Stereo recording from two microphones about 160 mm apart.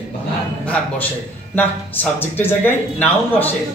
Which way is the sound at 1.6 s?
10° left (ahead or behind).